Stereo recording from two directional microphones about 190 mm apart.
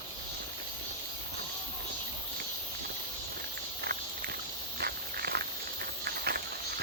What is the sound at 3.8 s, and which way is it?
Walk, 55° right (ahead or behind).